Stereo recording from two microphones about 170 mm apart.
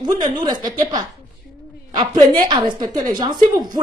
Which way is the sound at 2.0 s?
25° right (ahead or behind).